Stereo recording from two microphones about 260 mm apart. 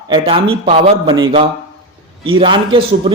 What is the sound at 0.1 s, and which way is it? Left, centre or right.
A man's voice, centre.